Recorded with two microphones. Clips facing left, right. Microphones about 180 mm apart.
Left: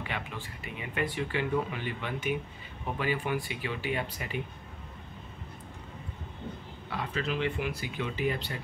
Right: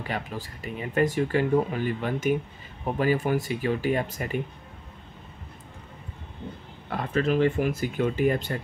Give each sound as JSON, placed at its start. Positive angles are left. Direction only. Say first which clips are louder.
{"t": 0.0, "sound": "speech", "louder": "right 5 dB", "side_deg": -40}
{"t": 6.9, "sound": "speech", "louder": "right 8 dB", "side_deg": -50}